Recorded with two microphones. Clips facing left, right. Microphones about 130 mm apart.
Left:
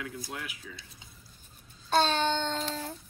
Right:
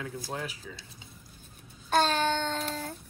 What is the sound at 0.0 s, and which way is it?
Speech, 30° right (ahead or behind).